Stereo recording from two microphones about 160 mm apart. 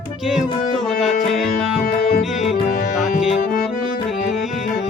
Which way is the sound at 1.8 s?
60° left (ahead or behind).